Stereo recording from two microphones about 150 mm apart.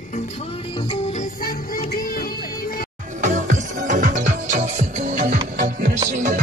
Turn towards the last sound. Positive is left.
turn(degrees=-55)  # may be behind; listen again after turning